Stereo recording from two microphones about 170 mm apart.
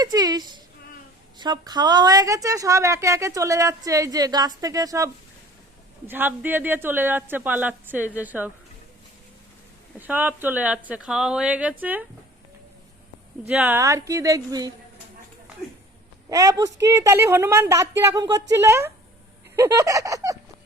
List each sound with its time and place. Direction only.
0.0 s a woman's voice: 25° right (ahead or behind)
10.0 s a woman's voice: 10° right (ahead or behind)
13.5 s a woman's voice: 10° right (ahead or behind)
16.3 s a woman's voice: 20° right (ahead or behind)
19.5 s a sound: 15° right (ahead or behind)